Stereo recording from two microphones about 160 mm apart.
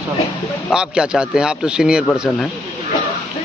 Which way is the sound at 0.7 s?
5° right (ahead or behind).